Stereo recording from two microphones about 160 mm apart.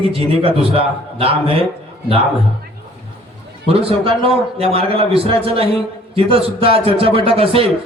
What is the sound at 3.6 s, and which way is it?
A man's voice, 35° right (ahead or behind).